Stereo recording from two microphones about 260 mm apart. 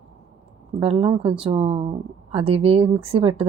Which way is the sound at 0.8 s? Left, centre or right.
Right.